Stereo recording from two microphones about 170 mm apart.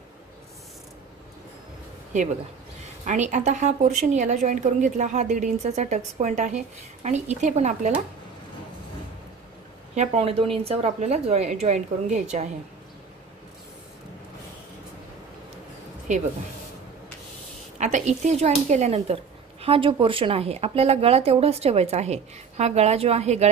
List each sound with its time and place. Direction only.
3.1 s a woman's voice: 45° right (ahead or behind)
9.9 s speech: 35° right (ahead or behind)
16.1 s a woman's voice: 45° right (ahead or behind)
17.7 s speech: 45° right (ahead or behind)